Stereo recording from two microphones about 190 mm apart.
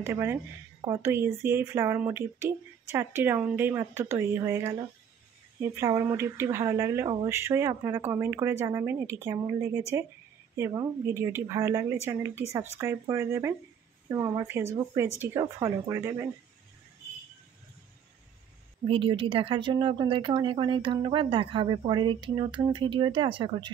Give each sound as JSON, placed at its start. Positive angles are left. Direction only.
{"t": 0.0, "sound": "speech", "side_deg": -15}
{"t": 5.8, "sound": "speech", "side_deg": -15}
{"t": 18.9, "sound": "speech", "side_deg": -25}